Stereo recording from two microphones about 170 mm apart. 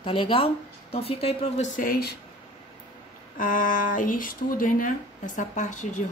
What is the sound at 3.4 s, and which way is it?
Speech, 55° left (ahead or behind).